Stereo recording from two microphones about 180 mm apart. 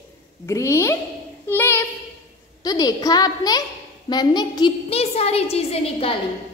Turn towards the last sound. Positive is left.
turn(degrees=35)  # may be behind; listen again after turning